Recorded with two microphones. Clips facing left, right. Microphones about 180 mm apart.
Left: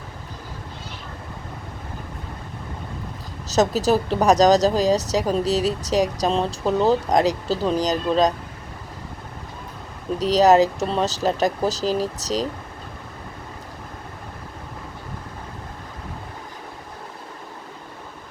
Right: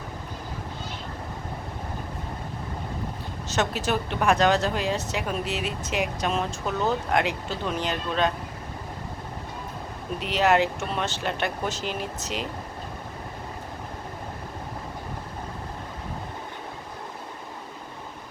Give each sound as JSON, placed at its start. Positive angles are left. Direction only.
{"t": 3.5, "sound": "speech", "side_deg": 35}
{"t": 10.2, "sound": "speech", "side_deg": 35}